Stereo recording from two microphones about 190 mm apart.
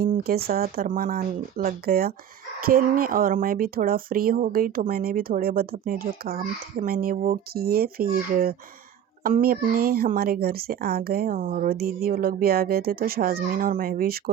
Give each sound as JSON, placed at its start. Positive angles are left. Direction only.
{"t": 0.0, "sound": "speech", "side_deg": -50}